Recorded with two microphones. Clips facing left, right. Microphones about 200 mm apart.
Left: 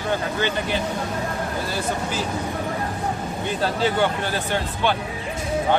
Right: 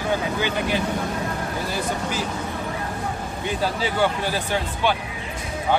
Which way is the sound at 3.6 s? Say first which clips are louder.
Left 2 dB; 10° right (ahead or behind).